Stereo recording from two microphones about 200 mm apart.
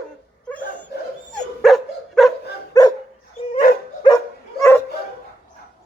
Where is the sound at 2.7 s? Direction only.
20° left (ahead or behind).